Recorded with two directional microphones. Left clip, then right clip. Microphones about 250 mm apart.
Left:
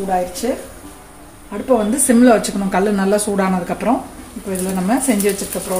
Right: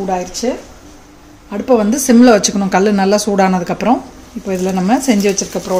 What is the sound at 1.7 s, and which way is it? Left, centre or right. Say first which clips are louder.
Speech: right 3 dB; right.